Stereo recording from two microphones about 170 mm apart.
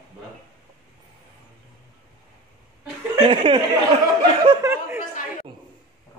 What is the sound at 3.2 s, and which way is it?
Speech, 35° right (ahead or behind).